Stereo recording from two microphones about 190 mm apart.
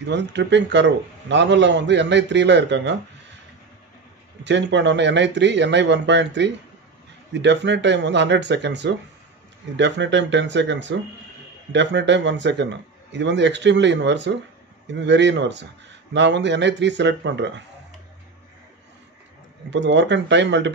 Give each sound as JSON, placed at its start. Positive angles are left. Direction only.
{"t": 0.0, "sound": "a man's voice", "side_deg": -65}
{"t": 4.5, "sound": "a man's voice", "side_deg": -65}
{"t": 19.7, "sound": "a man's voice", "side_deg": -70}